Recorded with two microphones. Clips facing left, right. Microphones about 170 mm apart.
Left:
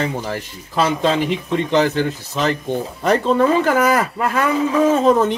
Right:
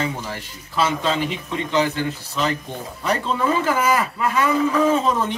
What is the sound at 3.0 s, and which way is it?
Speech, 50° left (ahead or behind).